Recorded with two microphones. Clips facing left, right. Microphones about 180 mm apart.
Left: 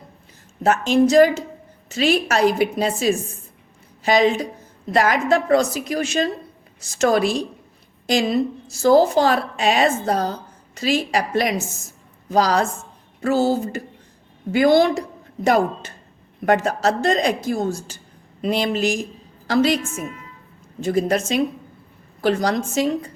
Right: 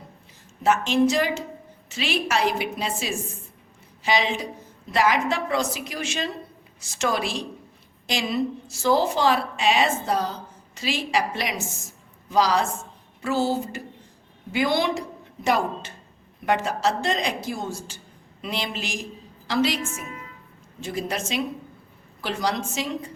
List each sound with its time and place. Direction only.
0.6 s a woman's voice: 40° left (ahead or behind)